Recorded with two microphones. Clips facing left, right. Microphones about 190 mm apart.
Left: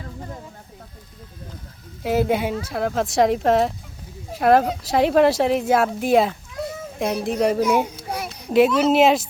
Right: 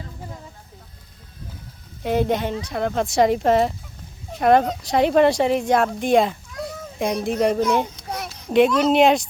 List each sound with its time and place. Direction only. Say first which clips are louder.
2.0 s speech: left 1 dB; 5° left (ahead or behind)